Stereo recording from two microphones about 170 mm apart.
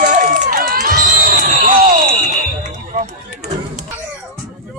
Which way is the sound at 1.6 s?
55° right (ahead or behind).